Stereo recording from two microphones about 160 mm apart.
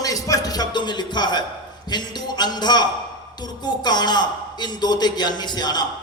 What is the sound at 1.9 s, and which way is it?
A woman's voice, 25° left (ahead or behind).